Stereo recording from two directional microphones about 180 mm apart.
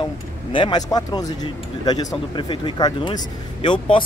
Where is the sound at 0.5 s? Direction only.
25° left (ahead or behind).